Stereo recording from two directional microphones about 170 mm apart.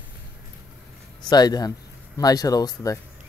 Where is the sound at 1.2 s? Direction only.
25° left (ahead or behind).